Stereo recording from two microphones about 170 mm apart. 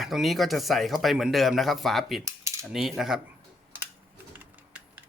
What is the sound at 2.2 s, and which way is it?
Cutlery, 15° right (ahead or behind).